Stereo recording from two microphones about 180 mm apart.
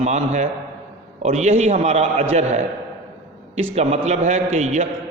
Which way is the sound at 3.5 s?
35° right (ahead or behind).